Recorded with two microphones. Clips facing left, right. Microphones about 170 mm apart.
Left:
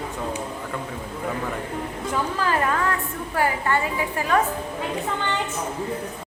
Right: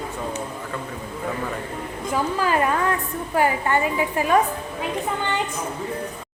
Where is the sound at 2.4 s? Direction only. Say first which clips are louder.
Right 2 dB; 15° right (ahead or behind).